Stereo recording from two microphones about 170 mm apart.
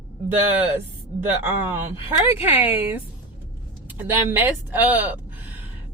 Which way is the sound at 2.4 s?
10° right (ahead or behind).